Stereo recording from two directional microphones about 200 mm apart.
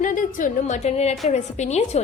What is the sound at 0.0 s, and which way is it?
A woman's voice, 40° left (ahead or behind).